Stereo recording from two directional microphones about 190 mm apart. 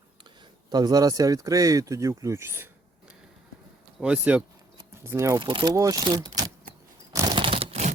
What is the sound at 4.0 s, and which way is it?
Speech, 5° right (ahead or behind).